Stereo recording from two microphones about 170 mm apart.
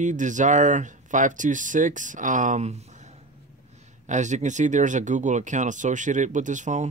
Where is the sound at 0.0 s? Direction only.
45° right (ahead or behind).